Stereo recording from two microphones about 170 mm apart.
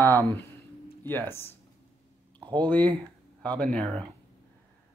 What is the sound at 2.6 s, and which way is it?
Speech, 10° left (ahead or behind).